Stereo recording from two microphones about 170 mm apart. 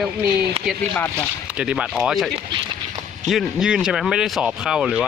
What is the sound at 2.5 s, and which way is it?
Speech, 30° right (ahead or behind).